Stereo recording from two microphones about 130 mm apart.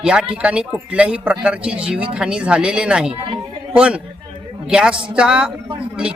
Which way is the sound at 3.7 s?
10° right (ahead or behind).